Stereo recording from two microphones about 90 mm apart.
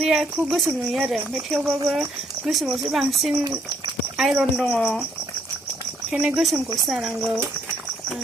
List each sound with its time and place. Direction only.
0.0 s speech: 5° right (ahead or behind)
6.1 s speech: 15° right (ahead or behind)
6.3 s speech: centre (ahead or behind)